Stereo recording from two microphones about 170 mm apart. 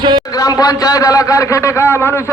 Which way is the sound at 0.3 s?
20° left (ahead or behind).